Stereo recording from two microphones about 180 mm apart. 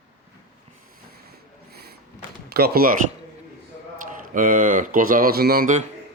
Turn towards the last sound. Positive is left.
turn(degrees=-50)  # may be behind; listen again after turning